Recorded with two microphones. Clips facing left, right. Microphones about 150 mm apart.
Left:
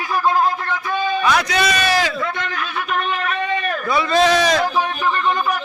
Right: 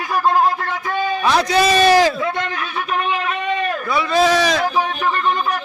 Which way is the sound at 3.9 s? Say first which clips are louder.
Left 1 dB; 5° right (ahead or behind).